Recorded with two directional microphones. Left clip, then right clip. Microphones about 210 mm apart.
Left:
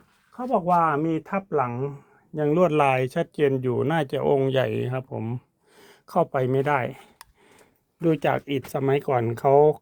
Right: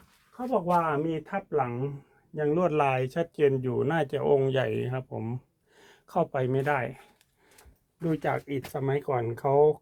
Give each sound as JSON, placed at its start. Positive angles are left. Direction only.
{"t": 0.3, "sound": "speech", "side_deg": 35}
{"t": 8.0, "sound": "speech", "side_deg": 45}